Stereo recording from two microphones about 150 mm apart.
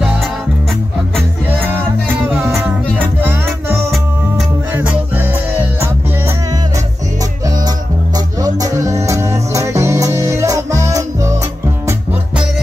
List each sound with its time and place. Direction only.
2.3 s music: 15° right (ahead or behind)
8.4 s music: 25° right (ahead or behind)